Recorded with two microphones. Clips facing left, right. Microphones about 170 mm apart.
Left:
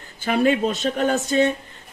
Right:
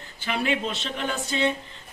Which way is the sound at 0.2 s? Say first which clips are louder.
Left 8 dB; 45° left (ahead or behind).